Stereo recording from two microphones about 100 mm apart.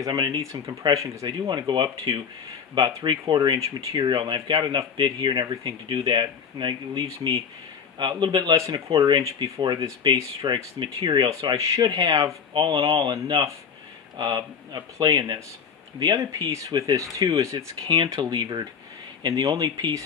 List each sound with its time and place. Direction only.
0.0 s speech: 40° right (ahead or behind)
1.5 s speech: 50° right (ahead or behind)
3.5 s speech: 35° right (ahead or behind)
8.9 s speech: 40° right (ahead or behind)
17.8 s speech: 50° right (ahead or behind)